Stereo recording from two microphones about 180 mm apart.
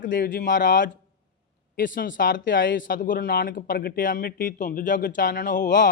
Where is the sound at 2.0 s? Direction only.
50° left (ahead or behind).